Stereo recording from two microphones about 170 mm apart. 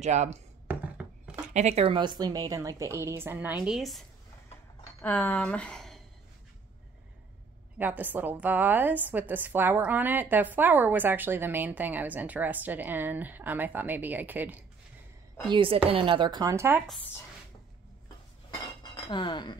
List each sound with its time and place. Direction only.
0.0 s speech: 45° right (ahead or behind)
0.7 s a sound: 5° right (ahead or behind)
1.5 s a woman's voice: 40° right (ahead or behind); by 4.0 s centre (ahead or behind)
5.0 s speech: 10° left (ahead or behind)
7.8 s a woman's voice: 10° right (ahead or behind)
15.4 s speech: 30° right (ahead or behind)
16.8 s speech: 5° left (ahead or behind)
18.5 s dishes: 30° left (ahead or behind)